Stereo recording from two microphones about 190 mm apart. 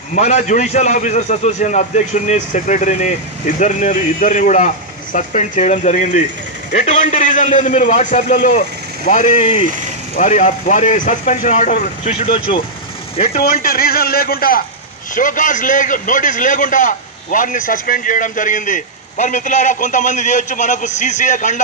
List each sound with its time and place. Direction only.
0.1 s a man's voice: 40° left (ahead or behind)
13.4 s a man's voice: 50° left (ahead or behind)